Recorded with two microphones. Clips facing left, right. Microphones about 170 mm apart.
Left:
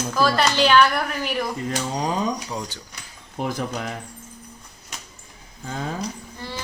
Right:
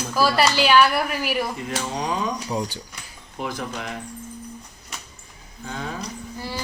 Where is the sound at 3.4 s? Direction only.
45° left (ahead or behind).